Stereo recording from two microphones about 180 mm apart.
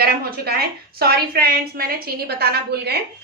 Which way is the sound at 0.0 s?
60° right (ahead or behind).